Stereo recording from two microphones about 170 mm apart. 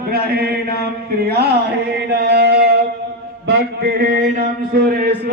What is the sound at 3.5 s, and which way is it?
Speech, 60° right (ahead or behind).